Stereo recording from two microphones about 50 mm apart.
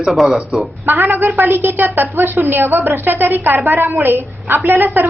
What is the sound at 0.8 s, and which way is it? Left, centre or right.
A woman's voice, right.